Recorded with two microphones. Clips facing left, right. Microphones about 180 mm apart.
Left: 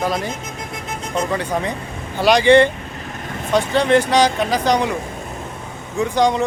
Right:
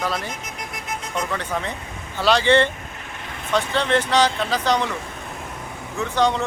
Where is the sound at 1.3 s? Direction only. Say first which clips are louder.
Left 5 dB; 15° left (ahead or behind).